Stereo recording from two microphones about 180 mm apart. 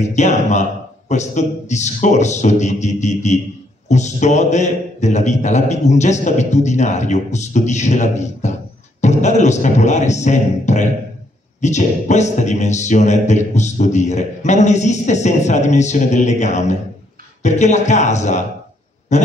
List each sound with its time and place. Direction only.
0.0 s a man's voice: 40° left (ahead or behind)